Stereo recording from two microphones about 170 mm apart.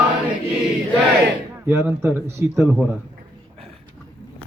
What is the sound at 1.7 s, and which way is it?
Speech, 10° right (ahead or behind).